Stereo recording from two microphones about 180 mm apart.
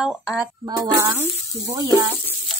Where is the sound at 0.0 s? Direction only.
5° right (ahead or behind).